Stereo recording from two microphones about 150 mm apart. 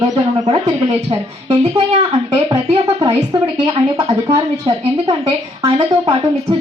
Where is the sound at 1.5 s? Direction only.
40° right (ahead or behind).